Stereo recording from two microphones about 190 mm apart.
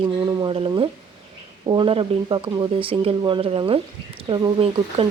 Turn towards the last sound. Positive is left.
turn(degrees=-25)  # may be behind; listen again after turning